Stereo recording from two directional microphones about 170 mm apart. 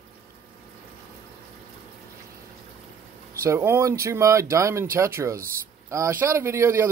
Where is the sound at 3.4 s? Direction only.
15° right (ahead or behind).